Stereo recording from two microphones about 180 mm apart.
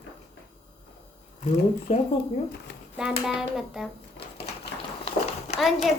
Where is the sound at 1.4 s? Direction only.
35° left (ahead or behind).